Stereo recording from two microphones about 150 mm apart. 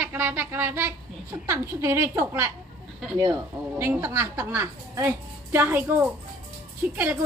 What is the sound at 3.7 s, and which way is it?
A woman's voice, 15° right (ahead or behind).